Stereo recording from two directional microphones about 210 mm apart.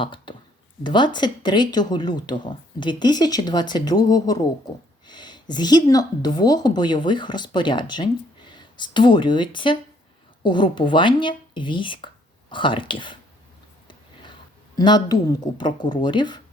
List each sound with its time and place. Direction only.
0.0 s speech: 25° left (ahead or behind)
13.8 s a sound: 20° left (ahead or behind)
14.8 s speech: 20° left (ahead or behind)